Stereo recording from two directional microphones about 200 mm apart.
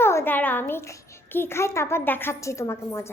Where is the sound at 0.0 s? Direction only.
10° left (ahead or behind).